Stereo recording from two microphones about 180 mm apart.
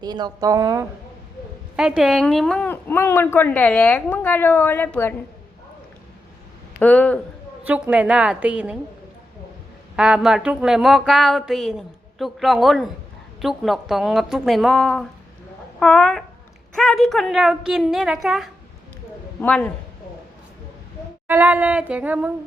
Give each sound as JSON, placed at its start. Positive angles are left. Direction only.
{"t": 0.0, "sound": "a woman's voice", "side_deg": -25}
{"t": 1.7, "sound": "a woman's voice", "side_deg": -5}
{"t": 6.7, "sound": "speech", "side_deg": 10}
{"t": 7.6, "sound": "a woman's voice", "side_deg": -10}
{"t": 9.9, "sound": "a woman's voice", "side_deg": -5}
{"t": 21.2, "sound": "a woman's voice", "side_deg": -10}